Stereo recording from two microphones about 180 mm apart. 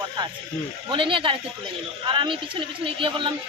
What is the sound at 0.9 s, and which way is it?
A woman's voice, 30° right (ahead or behind).